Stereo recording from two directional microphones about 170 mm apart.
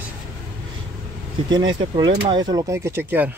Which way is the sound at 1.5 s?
25° right (ahead or behind).